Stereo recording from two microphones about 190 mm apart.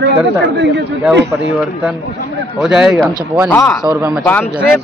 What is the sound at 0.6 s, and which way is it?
Speech, 60° right (ahead or behind).